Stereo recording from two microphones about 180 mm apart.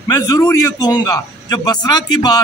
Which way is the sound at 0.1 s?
20° left (ahead or behind).